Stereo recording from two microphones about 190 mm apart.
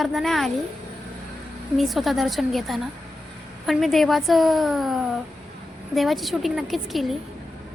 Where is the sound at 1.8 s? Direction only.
Centre (ahead or behind).